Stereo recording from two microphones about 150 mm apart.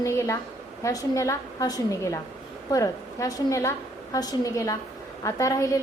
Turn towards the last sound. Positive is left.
turn(degrees=20)  # may be behind; listen again after turning